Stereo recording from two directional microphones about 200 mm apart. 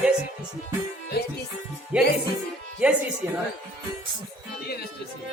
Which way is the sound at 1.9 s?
5° right (ahead or behind).